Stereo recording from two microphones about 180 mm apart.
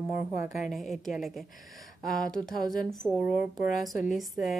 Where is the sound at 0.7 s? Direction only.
Centre (ahead or behind).